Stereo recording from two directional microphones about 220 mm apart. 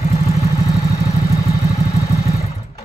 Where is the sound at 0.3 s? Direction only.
15° left (ahead or behind).